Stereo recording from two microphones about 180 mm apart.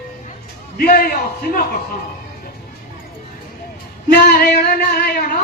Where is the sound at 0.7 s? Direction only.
55° left (ahead or behind).